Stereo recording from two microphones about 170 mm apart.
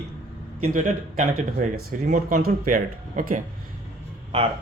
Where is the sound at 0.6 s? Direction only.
50° right (ahead or behind).